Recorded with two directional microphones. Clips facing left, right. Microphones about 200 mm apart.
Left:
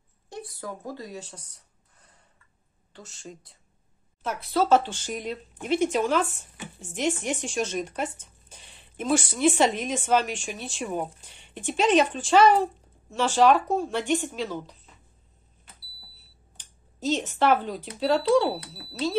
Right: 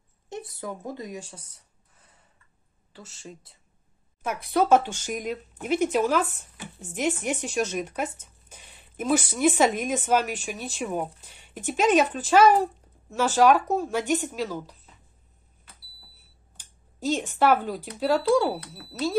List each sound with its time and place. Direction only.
0.3 s a sound: 20° right (ahead or behind); by 2.1 s centre (ahead or behind)
2.9 s speech: 5° right (ahead or behind)
4.2 s a woman's voice: 15° right (ahead or behind)
16.5 s speech: 10° right (ahead or behind)